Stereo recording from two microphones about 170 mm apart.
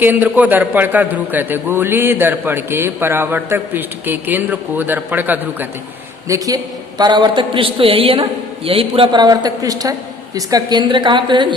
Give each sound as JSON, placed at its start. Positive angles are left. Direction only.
{"t": 0.0, "sound": "a man's voice", "side_deg": -10}